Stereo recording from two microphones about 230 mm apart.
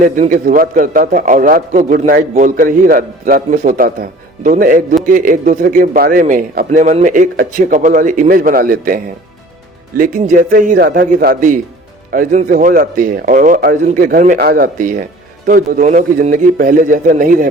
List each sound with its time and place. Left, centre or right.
0.0 s a man's voice: right
10.0 s a man's voice: right